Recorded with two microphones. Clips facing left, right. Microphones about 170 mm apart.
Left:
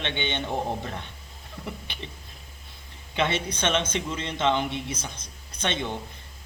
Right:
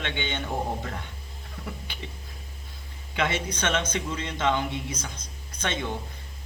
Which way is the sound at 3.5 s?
20° left (ahead or behind).